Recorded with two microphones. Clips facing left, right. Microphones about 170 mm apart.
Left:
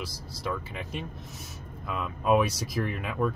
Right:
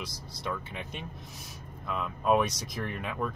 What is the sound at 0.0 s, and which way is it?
Speech, 5° left (ahead or behind).